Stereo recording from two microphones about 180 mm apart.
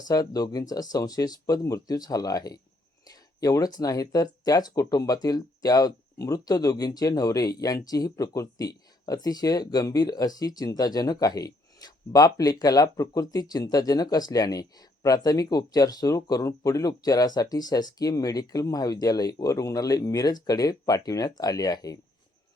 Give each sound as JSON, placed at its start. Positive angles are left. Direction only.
{"t": 0.0, "sound": "speech", "side_deg": 20}